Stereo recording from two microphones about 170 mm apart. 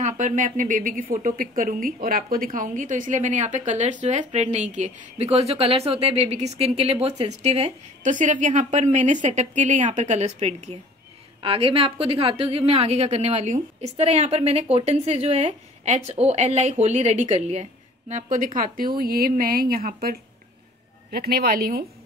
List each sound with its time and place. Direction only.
0.0 s a woman's voice: 50° right (ahead or behind)
18.9 s a woman's voice: 65° right (ahead or behind)